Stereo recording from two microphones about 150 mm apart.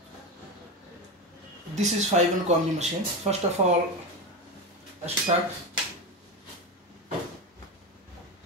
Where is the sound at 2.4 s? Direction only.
45° right (ahead or behind).